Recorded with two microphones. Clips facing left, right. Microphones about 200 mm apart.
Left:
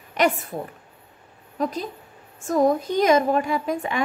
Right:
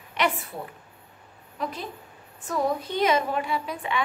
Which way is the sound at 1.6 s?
45° left (ahead or behind).